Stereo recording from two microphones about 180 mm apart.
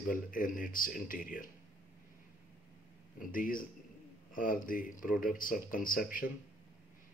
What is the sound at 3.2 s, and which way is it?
Speech, 50° left (ahead or behind).